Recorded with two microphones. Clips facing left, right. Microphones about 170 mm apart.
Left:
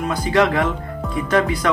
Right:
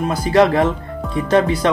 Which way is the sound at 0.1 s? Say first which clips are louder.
Right 3 dB; 35° right (ahead or behind).